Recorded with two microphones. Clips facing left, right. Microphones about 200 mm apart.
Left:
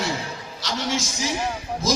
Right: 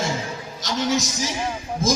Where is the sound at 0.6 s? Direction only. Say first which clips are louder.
Right 4 dB; 40° right (ahead or behind).